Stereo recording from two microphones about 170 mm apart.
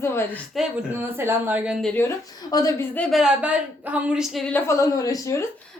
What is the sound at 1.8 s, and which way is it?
Speech, 5° left (ahead or behind).